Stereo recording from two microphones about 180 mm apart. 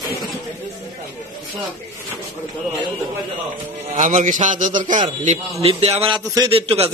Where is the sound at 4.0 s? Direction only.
40° right (ahead or behind).